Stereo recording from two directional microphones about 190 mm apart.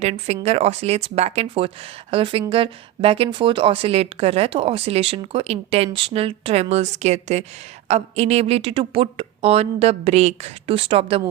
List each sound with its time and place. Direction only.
0.0 s a woman's voice: 35° right (ahead or behind)